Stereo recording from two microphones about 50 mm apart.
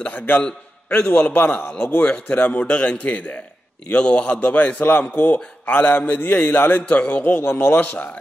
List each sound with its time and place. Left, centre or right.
0.0 s a man's voice: left
4.7 s a man's voice: left